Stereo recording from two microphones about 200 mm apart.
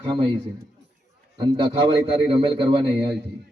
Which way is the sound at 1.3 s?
20° right (ahead or behind).